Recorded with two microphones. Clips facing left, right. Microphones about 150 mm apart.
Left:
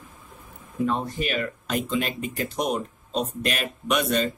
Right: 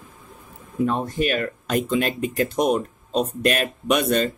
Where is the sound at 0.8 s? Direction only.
45° right (ahead or behind).